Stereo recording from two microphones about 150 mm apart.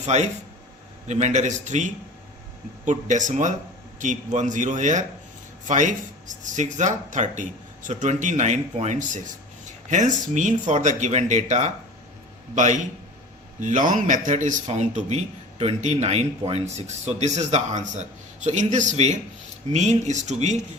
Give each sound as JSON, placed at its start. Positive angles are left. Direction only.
{"t": 0.0, "sound": "speech", "side_deg": -50}